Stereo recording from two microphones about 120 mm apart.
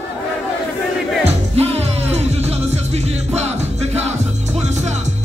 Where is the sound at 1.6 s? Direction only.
60° right (ahead or behind).